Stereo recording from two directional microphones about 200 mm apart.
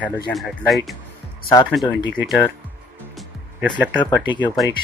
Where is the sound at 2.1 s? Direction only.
Centre (ahead or behind).